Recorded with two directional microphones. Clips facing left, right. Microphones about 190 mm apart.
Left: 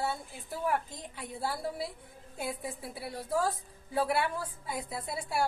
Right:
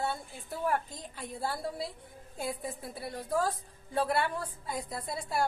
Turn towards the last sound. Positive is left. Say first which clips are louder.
# even
turn(degrees=5)  # may be behind; listen again after turning